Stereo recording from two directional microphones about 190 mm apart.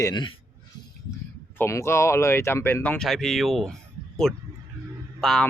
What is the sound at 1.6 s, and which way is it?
A man's voice, 15° left (ahead or behind).